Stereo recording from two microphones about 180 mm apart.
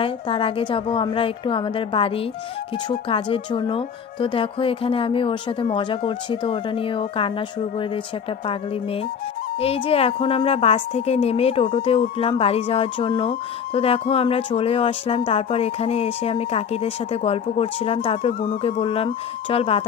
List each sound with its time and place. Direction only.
0.0 s speech: 30° left (ahead or behind)
9.6 s a woman's voice: 35° left (ahead or behind)